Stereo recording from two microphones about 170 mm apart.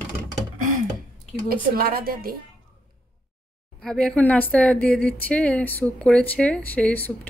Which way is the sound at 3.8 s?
5° left (ahead or behind).